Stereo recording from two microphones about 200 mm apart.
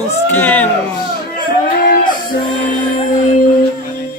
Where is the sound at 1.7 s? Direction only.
45° left (ahead or behind).